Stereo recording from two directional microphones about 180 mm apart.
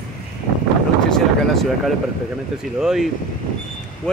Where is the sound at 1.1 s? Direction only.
Centre (ahead or behind).